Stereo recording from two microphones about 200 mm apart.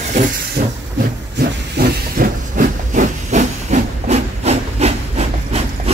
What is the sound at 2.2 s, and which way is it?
Hiss, 40° right (ahead or behind).